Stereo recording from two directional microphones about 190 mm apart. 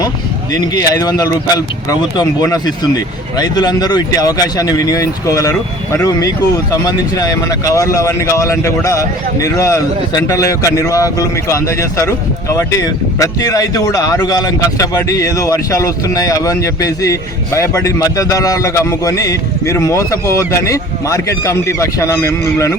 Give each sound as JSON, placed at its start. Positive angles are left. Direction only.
{"t": 0.6, "sound": "speech", "side_deg": 20}